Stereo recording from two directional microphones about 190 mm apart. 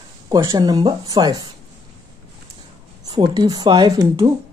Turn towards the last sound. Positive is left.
turn(degrees=-15)  # may be behind; listen again after turning